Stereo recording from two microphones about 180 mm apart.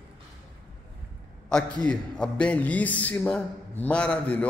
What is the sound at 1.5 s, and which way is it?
A man's voice, 5° left (ahead or behind).